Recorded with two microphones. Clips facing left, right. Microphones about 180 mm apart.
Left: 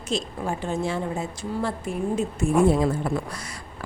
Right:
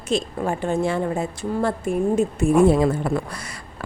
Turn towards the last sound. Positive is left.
turn(degrees=-60)  # may be behind; listen again after turning